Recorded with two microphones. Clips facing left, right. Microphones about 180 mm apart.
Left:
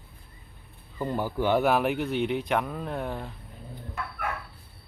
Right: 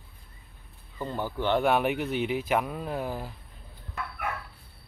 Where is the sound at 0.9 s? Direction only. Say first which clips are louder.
Left 3 dB; 10° left (ahead or behind); by 3.3 s 5° right (ahead or behind).